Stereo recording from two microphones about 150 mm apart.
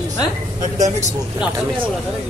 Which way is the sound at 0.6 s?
55° right (ahead or behind).